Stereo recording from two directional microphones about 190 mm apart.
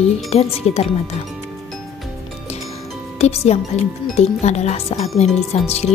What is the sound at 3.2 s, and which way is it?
Speech, 35° left (ahead or behind).